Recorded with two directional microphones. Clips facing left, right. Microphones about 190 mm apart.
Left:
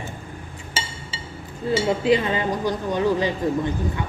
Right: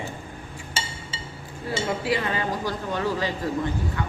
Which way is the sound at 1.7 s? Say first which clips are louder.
Left 7 dB; 20° left (ahead or behind).